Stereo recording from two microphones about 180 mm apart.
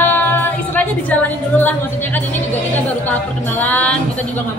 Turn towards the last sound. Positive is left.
turn(degrees=10)  # may be behind; listen again after turning